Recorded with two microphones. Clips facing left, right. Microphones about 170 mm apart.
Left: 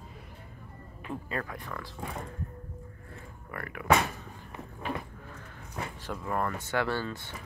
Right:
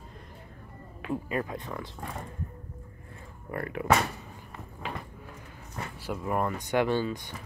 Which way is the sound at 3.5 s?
25° right (ahead or behind).